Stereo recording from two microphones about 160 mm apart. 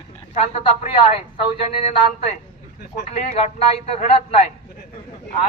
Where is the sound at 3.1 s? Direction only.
45° left (ahead or behind).